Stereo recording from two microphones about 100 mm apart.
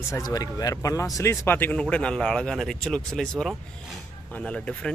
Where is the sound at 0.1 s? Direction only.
40° left (ahead or behind).